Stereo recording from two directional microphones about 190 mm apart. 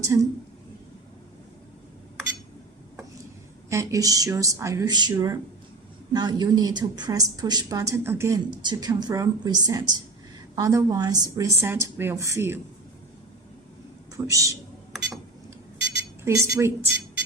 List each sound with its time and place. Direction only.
0.0 s a woman's voice: 15° right (ahead or behind)
3.7 s a woman's voice: 15° right (ahead or behind)
14.3 s a woman's voice: 15° right (ahead or behind)
16.2 s a woman's voice: 15° right (ahead or behind)